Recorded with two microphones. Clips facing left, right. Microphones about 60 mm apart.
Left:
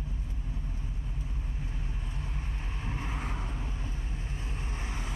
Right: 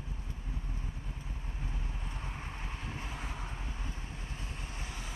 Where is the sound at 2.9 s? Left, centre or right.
Left.